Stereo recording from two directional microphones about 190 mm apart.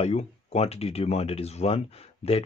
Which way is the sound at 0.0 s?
35° left (ahead or behind).